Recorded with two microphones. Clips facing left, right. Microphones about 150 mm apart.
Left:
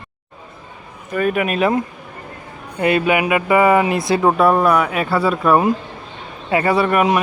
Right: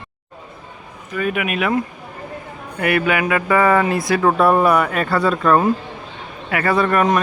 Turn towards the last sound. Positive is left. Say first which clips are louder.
# left 1 dB
turn(degrees=10)  # may be behind; listen again after turning